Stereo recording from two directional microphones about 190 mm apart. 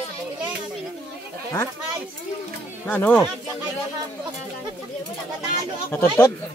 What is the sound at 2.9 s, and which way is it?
Speech, 10° left (ahead or behind).